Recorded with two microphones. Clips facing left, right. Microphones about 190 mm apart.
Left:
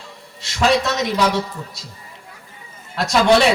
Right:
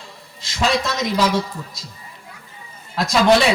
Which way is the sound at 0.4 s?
65° left (ahead or behind).